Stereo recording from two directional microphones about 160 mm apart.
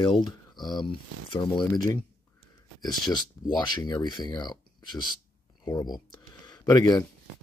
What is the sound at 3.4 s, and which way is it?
Speech, 25° left (ahead or behind).